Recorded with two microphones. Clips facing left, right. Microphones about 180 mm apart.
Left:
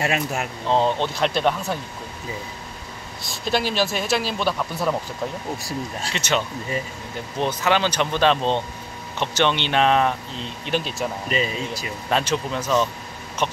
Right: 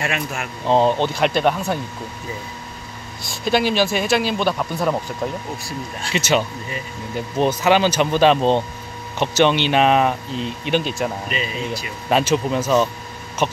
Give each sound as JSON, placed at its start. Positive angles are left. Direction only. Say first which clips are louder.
{"t": 0.0, "sound": "speech", "louder": "left 1 dB", "side_deg": 35}
{"t": 0.7, "sound": "speech", "louder": "right 4 dB", "side_deg": -15}
{"t": 0.9, "sound": "speech", "louder": "right 4 dB", "side_deg": 0}
{"t": 3.4, "sound": "speech", "louder": "right 4 dB", "side_deg": 0}
{"t": 6.1, "sound": "speech", "louder": "right 5 dB", "side_deg": -5}
{"t": 11.2, "sound": "speech", "louder": "left 1 dB", "side_deg": 35}
{"t": 12.1, "sound": "speech", "louder": "right 5 dB", "side_deg": -10}